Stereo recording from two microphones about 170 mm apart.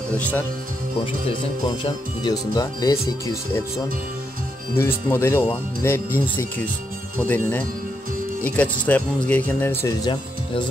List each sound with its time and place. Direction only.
0.2 s speech: 10° left (ahead or behind)
1.8 s speech: 25° left (ahead or behind)
4.7 s speech: 15° left (ahead or behind)